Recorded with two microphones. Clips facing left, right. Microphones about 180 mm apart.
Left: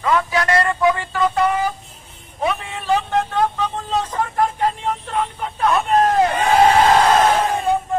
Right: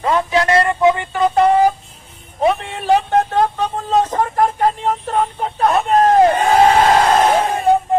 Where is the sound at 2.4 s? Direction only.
35° right (ahead or behind).